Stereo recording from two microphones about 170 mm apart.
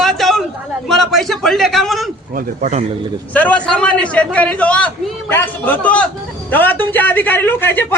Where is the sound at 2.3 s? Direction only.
45° right (ahead or behind).